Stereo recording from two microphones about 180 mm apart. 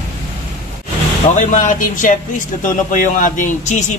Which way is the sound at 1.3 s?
45° left (ahead or behind).